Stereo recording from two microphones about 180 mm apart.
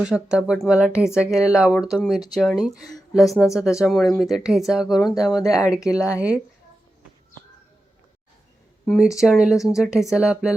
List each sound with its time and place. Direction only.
0.0 s a woman's voice: 5° right (ahead or behind)
5.1 s speech: 20° left (ahead or behind)
5.7 s speech: 5° right (ahead or behind)
8.9 s speech: 5° right (ahead or behind)